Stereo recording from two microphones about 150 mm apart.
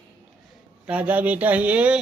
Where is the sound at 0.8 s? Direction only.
10° right (ahead or behind).